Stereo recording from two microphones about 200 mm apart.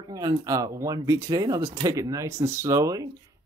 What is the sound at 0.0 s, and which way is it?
Speech, 20° right (ahead or behind).